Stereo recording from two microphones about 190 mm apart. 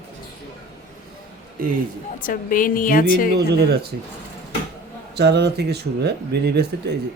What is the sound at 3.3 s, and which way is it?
Speech, 60° right (ahead or behind).